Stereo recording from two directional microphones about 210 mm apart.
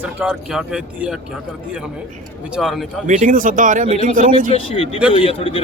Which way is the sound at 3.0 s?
40° right (ahead or behind).